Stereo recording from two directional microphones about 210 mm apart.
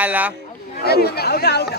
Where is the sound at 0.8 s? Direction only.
50° left (ahead or behind).